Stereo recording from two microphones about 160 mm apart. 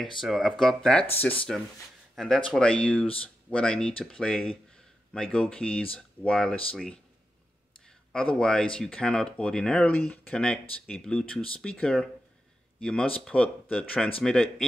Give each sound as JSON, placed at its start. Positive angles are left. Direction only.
{"t": 0.2, "sound": "speech", "side_deg": 0}
{"t": 8.1, "sound": "speech", "side_deg": 5}